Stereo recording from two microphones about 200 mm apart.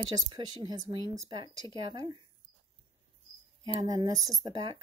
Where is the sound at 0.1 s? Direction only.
20° right (ahead or behind).